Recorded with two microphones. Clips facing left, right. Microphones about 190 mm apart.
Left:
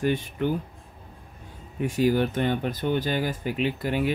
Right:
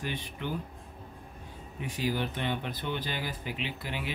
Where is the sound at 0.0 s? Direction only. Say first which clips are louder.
Left 11 dB; 50° left (ahead or behind).